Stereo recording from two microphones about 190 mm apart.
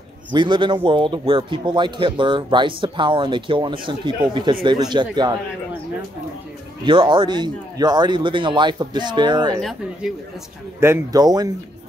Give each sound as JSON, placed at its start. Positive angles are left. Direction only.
{"t": 0.3, "sound": "a man's voice", "side_deg": -25}
{"t": 6.8, "sound": "a man's voice", "side_deg": -25}
{"t": 9.6, "sound": "speech", "side_deg": 0}
{"t": 10.8, "sound": "a man's voice", "side_deg": -15}